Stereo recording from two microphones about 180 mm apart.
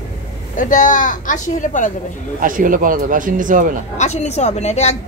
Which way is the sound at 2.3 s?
50° right (ahead or behind).